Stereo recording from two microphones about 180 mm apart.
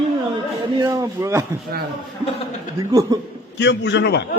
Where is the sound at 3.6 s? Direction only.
75° left (ahead or behind).